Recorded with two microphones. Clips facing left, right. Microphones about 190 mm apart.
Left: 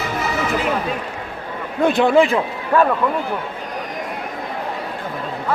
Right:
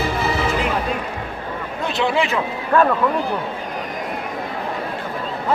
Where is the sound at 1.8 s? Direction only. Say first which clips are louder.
Left 7 dB; 50° left (ahead or behind).